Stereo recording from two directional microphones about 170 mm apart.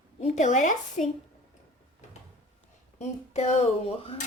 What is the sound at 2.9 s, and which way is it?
Speech, 40° left (ahead or behind).